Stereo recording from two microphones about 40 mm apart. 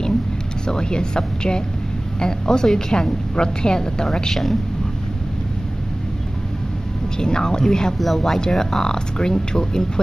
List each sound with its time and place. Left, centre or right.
0.7 s a woman's voice: left
7.2 s speech: centre